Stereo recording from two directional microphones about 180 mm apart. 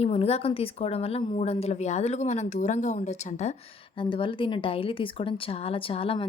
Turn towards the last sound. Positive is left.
turn(degrees=30)  # may be behind; listen again after turning